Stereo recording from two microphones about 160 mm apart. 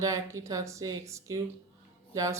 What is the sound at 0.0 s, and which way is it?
Speech, 20° right (ahead or behind).